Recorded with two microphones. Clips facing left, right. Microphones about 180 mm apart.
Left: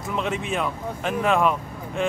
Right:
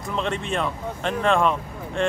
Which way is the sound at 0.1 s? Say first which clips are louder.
Even; 5° left (ahead or behind).